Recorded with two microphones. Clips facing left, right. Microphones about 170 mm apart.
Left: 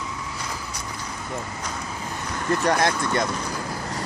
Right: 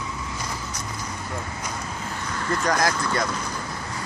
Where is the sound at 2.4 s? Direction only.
20° left (ahead or behind).